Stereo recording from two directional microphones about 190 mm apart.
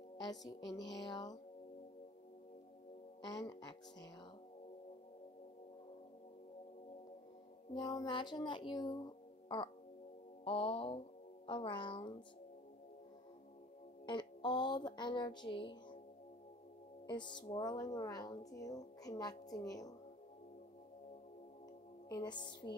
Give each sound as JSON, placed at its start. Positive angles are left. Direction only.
{"t": 0.5, "sound": "speech", "side_deg": 20}
{"t": 3.2, "sound": "speech", "side_deg": 20}
{"t": 7.7, "sound": "speech", "side_deg": 20}
{"t": 10.4, "sound": "speech", "side_deg": 30}
{"t": 14.0, "sound": "speech", "side_deg": 25}
{"t": 17.1, "sound": "speech", "side_deg": 25}
{"t": 22.1, "sound": "speech", "side_deg": 25}